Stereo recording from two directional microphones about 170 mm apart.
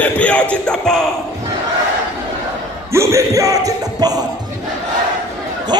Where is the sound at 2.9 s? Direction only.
15° right (ahead or behind).